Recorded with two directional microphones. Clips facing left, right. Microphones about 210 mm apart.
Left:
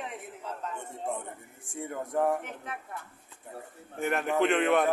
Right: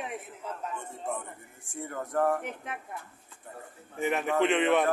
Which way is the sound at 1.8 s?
20° left (ahead or behind).